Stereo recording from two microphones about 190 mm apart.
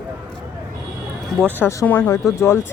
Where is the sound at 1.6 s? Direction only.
15° left (ahead or behind).